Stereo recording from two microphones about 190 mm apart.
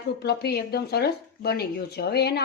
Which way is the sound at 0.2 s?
60° left (ahead or behind).